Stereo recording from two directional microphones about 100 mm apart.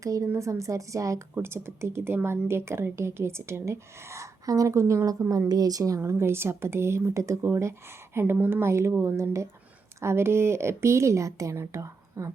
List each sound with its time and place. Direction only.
0.0 s a woman's voice: 35° right (ahead or behind)